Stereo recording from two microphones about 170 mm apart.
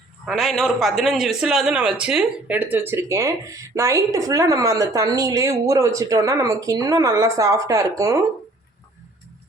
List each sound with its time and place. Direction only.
0.3 s a man's voice: centre (ahead or behind); by 8.2 s 20° right (ahead or behind)